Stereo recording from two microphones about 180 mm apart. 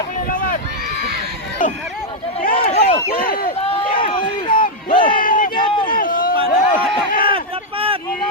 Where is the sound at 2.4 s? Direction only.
55° left (ahead or behind).